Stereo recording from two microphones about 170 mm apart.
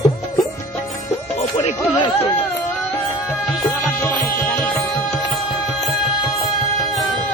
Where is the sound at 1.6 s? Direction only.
35° left (ahead or behind).